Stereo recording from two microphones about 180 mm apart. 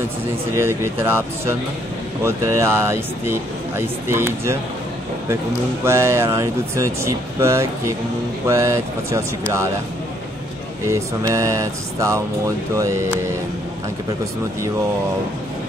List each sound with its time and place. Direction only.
0.6 s speech: 10° right (ahead or behind)
5.9 s speech: 15° right (ahead or behind)
10.9 s speech: 15° right (ahead or behind)